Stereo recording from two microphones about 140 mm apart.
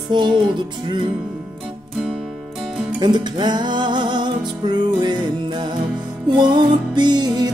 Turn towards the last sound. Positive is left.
turn(degrees=-30)  # may be behind; listen again after turning